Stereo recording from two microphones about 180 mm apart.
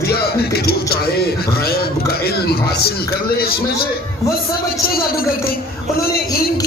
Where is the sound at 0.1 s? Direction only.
60° left (ahead or behind).